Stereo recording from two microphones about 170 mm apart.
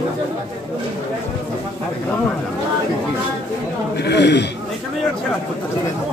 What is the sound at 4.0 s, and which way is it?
Speech, 85° left.